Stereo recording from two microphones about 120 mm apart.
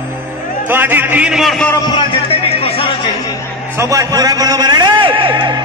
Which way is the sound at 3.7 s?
30° right (ahead or behind).